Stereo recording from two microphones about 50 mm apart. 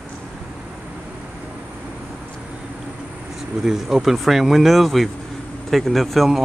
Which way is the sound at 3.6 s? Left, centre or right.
Centre.